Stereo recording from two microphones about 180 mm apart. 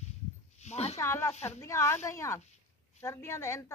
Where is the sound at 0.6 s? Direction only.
35° left (ahead or behind).